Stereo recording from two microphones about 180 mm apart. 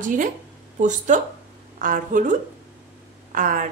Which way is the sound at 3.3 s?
45° right (ahead or behind).